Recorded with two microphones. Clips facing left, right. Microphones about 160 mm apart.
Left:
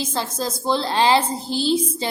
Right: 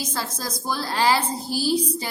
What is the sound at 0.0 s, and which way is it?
A woman's voice, 25° left (ahead or behind).